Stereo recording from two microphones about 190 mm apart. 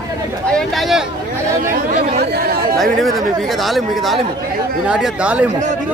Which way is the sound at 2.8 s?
Centre (ahead or behind).